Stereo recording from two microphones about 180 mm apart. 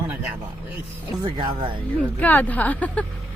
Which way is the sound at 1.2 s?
30° right (ahead or behind).